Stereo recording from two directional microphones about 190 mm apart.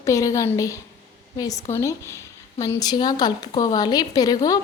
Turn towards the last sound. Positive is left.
turn(degrees=20)  # may be behind; listen again after turning